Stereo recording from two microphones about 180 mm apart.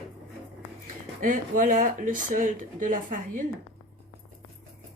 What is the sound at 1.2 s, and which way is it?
Speech, 45° right (ahead or behind).